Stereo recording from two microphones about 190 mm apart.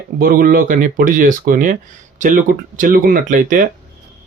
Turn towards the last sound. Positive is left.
turn(degrees=-45)  # may be behind; listen again after turning